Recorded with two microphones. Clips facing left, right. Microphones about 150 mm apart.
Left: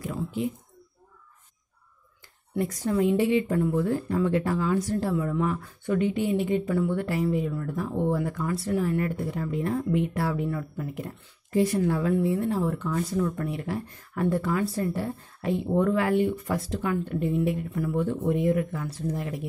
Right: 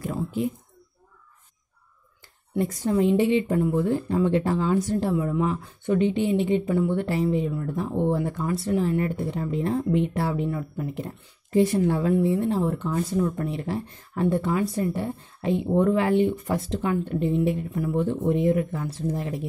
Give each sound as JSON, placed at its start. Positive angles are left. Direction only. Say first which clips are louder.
{"t": 0.0, "sound": "speech", "louder": "right 3 dB", "side_deg": -45}
{"t": 2.5, "sound": "speech", "louder": "right 2 dB", "side_deg": -25}